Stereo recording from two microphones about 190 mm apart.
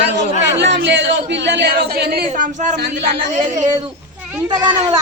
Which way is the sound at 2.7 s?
60° right (ahead or behind).